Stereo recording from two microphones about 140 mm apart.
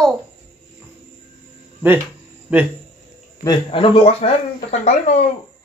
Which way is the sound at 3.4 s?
35° left (ahead or behind).